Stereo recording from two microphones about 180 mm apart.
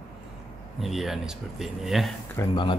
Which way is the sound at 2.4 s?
15° left (ahead or behind).